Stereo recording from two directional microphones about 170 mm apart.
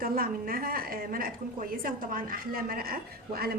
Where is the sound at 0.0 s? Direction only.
60° right (ahead or behind).